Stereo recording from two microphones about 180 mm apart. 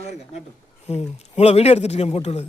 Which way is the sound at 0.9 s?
35° left (ahead or behind).